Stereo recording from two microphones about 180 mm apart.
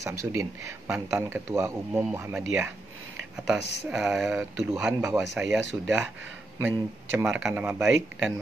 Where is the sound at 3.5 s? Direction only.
70° left (ahead or behind).